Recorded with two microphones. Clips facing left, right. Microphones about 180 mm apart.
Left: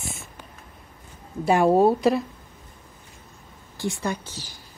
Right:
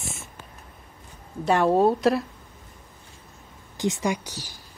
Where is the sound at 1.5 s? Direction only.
10° left (ahead or behind).